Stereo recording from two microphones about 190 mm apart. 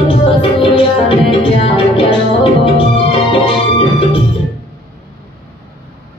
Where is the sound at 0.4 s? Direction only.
30° left (ahead or behind).